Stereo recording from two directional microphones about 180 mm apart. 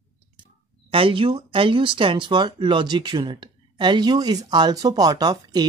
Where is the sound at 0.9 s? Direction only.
30° right (ahead or behind).